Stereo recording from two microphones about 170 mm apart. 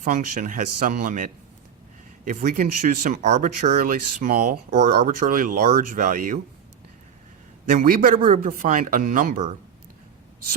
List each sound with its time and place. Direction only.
0.0 s speech: 50° right (ahead or behind)
7.7 s speech: 55° right (ahead or behind)